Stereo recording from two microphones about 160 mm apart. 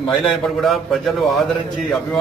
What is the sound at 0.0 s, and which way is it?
A man's voice, centre (ahead or behind).